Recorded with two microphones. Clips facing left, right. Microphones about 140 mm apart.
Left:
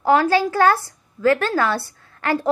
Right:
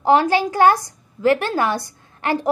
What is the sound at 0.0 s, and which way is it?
A woman's voice, 20° right (ahead or behind).